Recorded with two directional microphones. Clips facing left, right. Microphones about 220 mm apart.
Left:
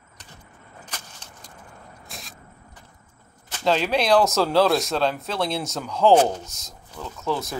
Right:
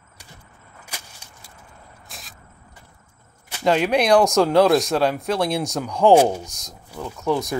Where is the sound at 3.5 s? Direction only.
10° right (ahead or behind).